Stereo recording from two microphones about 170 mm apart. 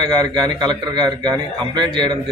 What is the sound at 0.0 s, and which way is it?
A man's voice, 25° right (ahead or behind).